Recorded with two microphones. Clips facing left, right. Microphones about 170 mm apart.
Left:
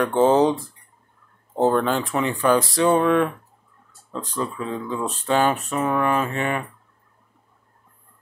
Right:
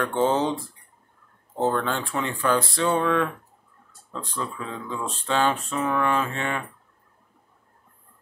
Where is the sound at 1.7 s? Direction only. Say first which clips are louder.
Left 5 dB; 15° left (ahead or behind).